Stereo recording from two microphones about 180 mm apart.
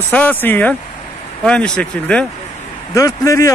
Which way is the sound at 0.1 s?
10° left (ahead or behind).